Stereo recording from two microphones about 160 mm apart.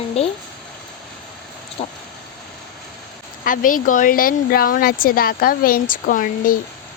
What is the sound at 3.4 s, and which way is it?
Speech, 60° left (ahead or behind).